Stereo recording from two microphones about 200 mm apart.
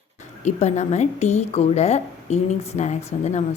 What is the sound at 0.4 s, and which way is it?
A woman's voice, 35° left (ahead or behind).